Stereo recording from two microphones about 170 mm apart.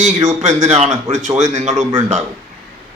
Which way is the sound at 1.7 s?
25° right (ahead or behind).